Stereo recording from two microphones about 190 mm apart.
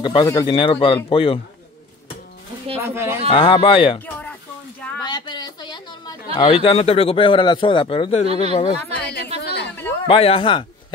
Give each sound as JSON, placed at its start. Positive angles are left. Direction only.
{"t": 0.0, "sound": "speech", "side_deg": 25}
{"t": 2.8, "sound": "speech", "side_deg": -15}
{"t": 3.3, "sound": "speech", "side_deg": 25}
{"t": 4.0, "sound": "a sound", "side_deg": 5}
{"t": 5.0, "sound": "speech", "side_deg": 20}
{"t": 9.0, "sound": "a sound", "side_deg": 60}
{"t": 10.0, "sound": "speech", "side_deg": 30}